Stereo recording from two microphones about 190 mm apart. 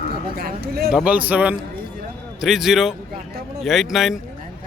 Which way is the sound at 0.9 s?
5° right (ahead or behind).